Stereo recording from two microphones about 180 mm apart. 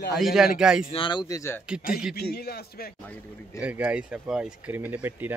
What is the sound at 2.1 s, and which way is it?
Speech, 60° left (ahead or behind).